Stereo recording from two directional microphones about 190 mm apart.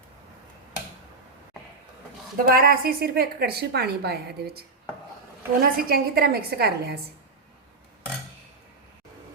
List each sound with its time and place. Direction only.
2.4 s a woman's voice: 50° right (ahead or behind)
5.6 s a woman's voice: 55° right (ahead or behind)